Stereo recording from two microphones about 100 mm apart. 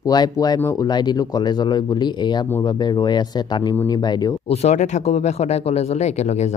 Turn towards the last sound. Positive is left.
turn(degrees=90)